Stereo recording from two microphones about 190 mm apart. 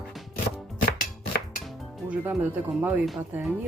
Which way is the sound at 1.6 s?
5° right (ahead or behind).